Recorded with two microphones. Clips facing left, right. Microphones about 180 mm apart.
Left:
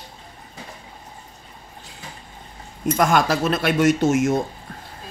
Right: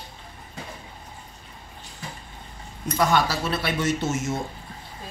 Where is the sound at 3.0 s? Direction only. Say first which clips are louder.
Left 3 dB; 45° left (ahead or behind).